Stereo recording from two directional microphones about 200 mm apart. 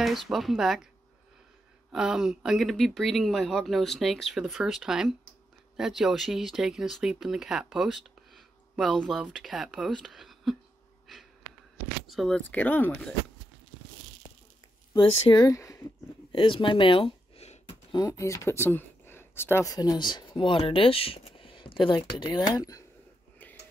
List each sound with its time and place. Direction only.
0.0 s speech: centre (ahead or behind)
1.9 s speech: 5° right (ahead or behind)
11.1 s a sound: centre (ahead or behind)
12.1 s speech: centre (ahead or behind)
15.0 s speech: 20° left (ahead or behind)
17.9 s speech: 15° left (ahead or behind)